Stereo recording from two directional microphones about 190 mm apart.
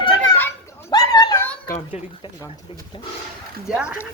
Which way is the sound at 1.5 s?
15° left (ahead or behind).